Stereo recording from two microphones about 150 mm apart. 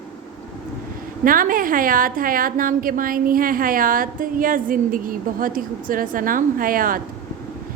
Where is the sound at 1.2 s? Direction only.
70° right (ahead or behind).